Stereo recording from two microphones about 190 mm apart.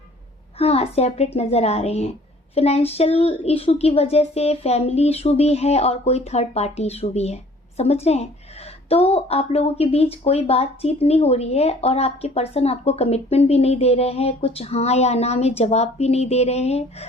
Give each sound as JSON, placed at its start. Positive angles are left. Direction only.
{"t": 0.6, "sound": "speech", "side_deg": 30}